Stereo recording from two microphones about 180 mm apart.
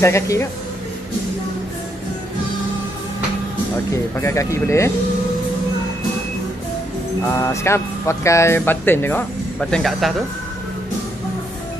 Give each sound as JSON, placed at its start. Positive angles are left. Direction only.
{"t": 0.0, "sound": "speech", "side_deg": 15}
{"t": 3.9, "sound": "speech", "side_deg": 15}
{"t": 7.3, "sound": "speech", "side_deg": 15}